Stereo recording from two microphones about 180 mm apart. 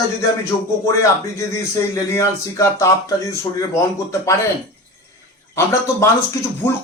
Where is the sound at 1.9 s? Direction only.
15° left (ahead or behind).